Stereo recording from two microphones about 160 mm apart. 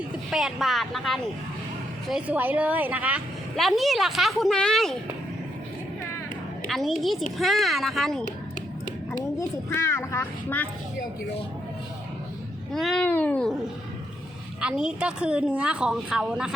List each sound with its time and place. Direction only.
0.3 s a woman's voice: centre (ahead or behind)
6.7 s a woman's voice: centre (ahead or behind)
9.1 s a child's voice: 20° left (ahead or behind)
12.7 s a woman's voice: centre (ahead or behind)
13.1 s a child's voice: 10° left (ahead or behind)
14.6 s a woman's voice: 5° right (ahead or behind)